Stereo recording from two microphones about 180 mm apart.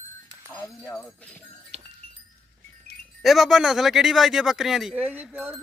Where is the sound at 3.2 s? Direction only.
Centre (ahead or behind).